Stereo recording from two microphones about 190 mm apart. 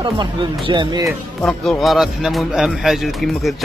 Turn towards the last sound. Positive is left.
turn(degrees=0)  # may be behind; listen again after turning